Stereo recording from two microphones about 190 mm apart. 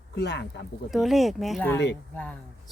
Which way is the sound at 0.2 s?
60° left (ahead or behind).